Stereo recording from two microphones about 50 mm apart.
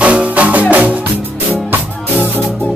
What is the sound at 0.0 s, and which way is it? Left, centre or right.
Music, right.